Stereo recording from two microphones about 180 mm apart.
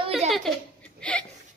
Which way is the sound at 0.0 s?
35° right (ahead or behind).